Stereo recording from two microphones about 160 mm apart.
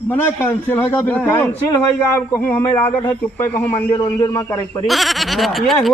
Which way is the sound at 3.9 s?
25° left (ahead or behind).